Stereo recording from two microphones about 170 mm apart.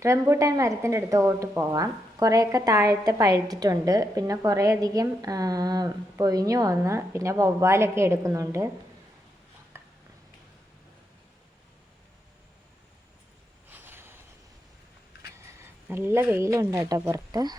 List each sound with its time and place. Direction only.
0.0 s speech: 15° right (ahead or behind)
9.7 s a sound: 15° right (ahead or behind)
13.7 s vehicle: 10° right (ahead or behind)
15.9 s speech: 15° right (ahead or behind)